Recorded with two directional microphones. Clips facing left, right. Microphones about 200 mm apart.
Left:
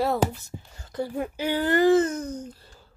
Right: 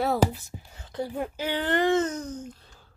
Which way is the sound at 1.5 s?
10° left (ahead or behind).